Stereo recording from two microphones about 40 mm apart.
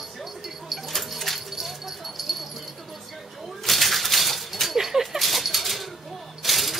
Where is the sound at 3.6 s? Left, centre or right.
Centre.